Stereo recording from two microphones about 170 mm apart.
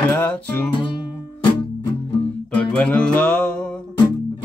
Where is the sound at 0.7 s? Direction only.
30° left (ahead or behind).